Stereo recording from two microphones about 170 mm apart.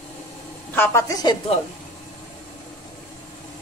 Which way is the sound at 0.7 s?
15° left (ahead or behind).